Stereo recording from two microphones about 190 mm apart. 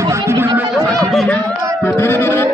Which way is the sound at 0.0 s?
15° right (ahead or behind).